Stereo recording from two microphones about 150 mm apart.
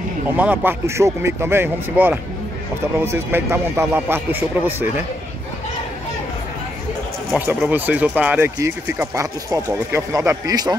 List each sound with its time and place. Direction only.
0.4 s speech: 10° right (ahead or behind)
7.7 s speech: 10° right (ahead or behind)